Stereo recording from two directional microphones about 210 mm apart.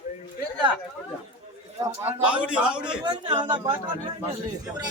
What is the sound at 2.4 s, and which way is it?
Speech, 5° right (ahead or behind).